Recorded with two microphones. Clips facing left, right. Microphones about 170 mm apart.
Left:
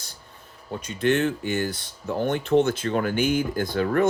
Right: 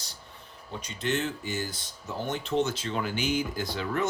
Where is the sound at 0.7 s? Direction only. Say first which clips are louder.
Left 8 dB; 50° left (ahead or behind).